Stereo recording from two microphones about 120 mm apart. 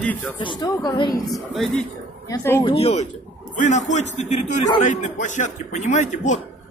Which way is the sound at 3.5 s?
85° left.